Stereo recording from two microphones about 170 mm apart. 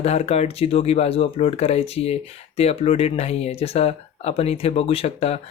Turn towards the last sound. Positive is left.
turn(degrees=35)  # may be behind; listen again after turning